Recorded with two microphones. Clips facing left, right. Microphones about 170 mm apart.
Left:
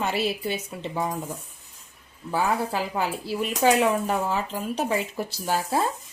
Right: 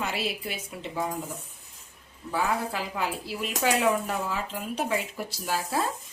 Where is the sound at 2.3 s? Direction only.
30° left (ahead or behind).